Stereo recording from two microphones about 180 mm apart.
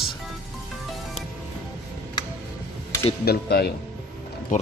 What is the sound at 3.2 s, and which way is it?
Speech, 60° left (ahead or behind).